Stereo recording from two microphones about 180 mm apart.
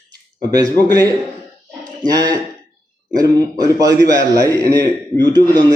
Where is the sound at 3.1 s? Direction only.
20° right (ahead or behind).